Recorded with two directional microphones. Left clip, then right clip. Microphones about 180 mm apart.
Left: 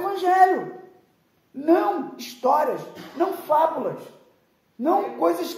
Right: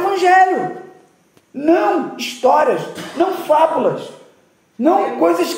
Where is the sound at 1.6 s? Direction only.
10° left (ahead or behind).